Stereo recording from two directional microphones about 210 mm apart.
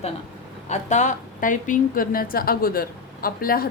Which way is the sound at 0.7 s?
35° left (ahead or behind).